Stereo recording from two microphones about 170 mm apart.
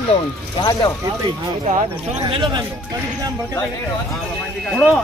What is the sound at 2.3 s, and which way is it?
Speech, 30° right (ahead or behind).